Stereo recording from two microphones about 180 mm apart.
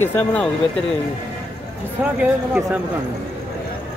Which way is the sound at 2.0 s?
5° right (ahead or behind).